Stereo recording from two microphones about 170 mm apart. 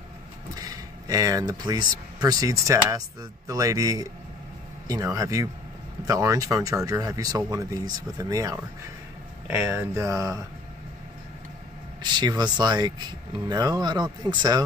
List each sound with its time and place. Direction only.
0.6 s speech: 20° right (ahead or behind)
9.7 s speech: 15° right (ahead or behind)
12.0 s speech: 25° right (ahead or behind)